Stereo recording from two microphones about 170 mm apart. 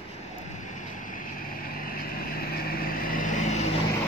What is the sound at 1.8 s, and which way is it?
Vehicle, 55° left (ahead or behind).